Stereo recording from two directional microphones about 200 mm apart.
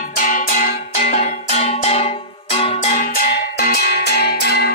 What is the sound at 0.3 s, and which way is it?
Music, 40° left (ahead or behind).